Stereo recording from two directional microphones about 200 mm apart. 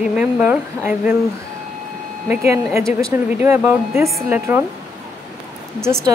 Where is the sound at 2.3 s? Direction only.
15° right (ahead or behind).